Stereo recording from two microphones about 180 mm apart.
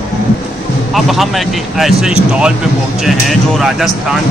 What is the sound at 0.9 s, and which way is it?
Speech, centre (ahead or behind).